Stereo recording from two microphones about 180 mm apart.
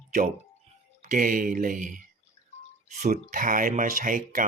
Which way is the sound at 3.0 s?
50° right (ahead or behind).